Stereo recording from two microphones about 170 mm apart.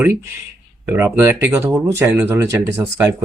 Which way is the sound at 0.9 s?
15° right (ahead or behind).